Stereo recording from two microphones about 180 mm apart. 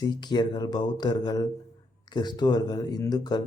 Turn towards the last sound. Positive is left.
turn(degrees=20)  # may be behind; listen again after turning